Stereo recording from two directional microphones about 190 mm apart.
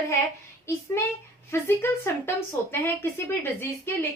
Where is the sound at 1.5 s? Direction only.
10° left (ahead or behind).